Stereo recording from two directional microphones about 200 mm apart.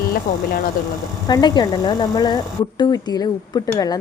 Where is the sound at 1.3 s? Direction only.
20° left (ahead or behind).